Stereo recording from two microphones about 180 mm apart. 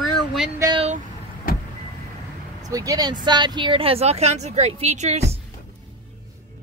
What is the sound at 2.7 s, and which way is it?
A woman's voice, 20° right (ahead or behind).